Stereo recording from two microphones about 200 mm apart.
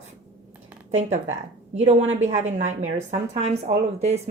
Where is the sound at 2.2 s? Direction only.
35° right (ahead or behind).